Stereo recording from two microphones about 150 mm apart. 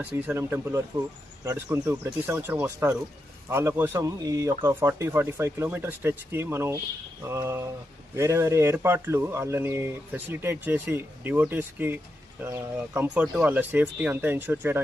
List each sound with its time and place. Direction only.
0.0 s speech: 15° right (ahead or behind)